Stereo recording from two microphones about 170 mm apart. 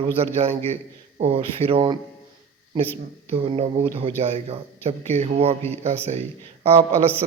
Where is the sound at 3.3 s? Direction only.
35° right (ahead or behind).